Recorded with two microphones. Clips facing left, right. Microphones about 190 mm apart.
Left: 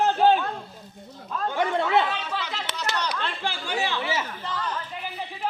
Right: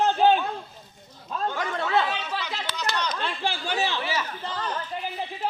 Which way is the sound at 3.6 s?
15° left (ahead or behind).